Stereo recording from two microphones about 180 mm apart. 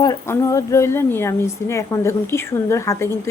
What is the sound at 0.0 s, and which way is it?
A woman's voice, 20° left (ahead or behind).